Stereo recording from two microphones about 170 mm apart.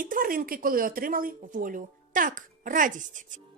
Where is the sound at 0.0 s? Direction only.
55° right (ahead or behind).